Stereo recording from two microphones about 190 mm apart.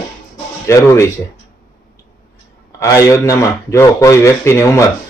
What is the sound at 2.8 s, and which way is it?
Speech, 15° left (ahead or behind).